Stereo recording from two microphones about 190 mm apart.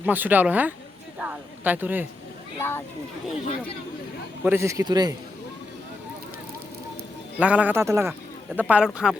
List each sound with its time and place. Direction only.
0.0 s speech: 10° right (ahead or behind)
2.6 s a child's voice: 10° left (ahead or behind)
4.4 s speech: 15° right (ahead or behind)
7.3 s a man's voice: 5° right (ahead or behind)